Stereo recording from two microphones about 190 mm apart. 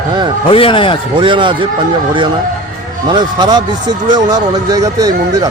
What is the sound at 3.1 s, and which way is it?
Speech, 25° right (ahead or behind).